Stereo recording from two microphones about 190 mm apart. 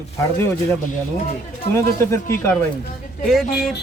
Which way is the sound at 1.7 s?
10° left (ahead or behind).